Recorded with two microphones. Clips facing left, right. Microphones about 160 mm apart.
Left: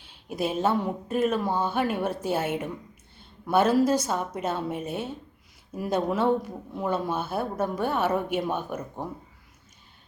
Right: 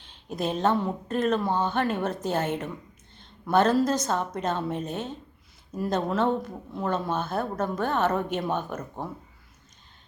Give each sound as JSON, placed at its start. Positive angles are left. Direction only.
{"t": 0.0, "sound": "speech", "side_deg": 10}